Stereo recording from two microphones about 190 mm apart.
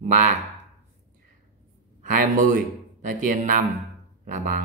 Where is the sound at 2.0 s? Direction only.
45° right (ahead or behind).